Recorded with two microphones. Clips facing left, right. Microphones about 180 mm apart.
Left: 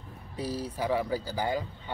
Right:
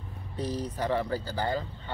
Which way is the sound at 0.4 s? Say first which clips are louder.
Right 1 dB; 10° left (ahead or behind).